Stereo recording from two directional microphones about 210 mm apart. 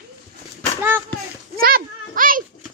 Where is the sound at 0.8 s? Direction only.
10° right (ahead or behind).